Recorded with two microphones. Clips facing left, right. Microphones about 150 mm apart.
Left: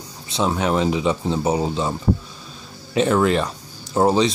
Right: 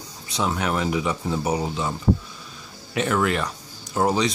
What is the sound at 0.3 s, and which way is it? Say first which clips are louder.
Speech: left 4 dB; 25° left (ahead or behind).